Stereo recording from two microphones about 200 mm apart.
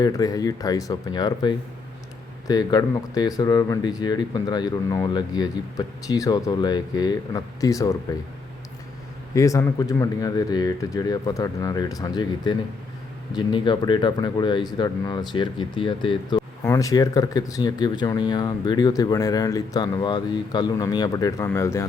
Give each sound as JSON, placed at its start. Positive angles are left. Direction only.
{"t": 0.0, "sound": "speech", "side_deg": 15}
{"t": 9.3, "sound": "speech", "side_deg": 15}